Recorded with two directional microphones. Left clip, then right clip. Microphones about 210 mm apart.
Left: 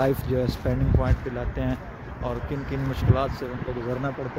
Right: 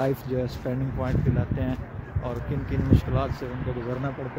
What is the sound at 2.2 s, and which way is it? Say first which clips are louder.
Speech: left 2 dB; 5° left (ahead or behind).